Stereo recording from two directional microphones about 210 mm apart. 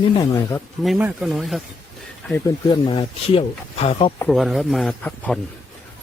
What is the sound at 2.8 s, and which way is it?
Speech, 25° left (ahead or behind).